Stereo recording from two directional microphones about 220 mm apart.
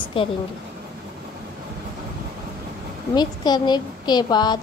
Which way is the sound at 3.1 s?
20° left (ahead or behind).